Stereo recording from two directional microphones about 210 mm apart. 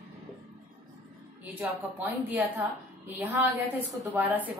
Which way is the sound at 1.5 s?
10° right (ahead or behind).